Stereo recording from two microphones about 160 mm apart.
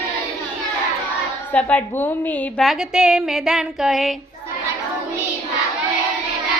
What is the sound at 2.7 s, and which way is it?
Music, 5° right (ahead or behind).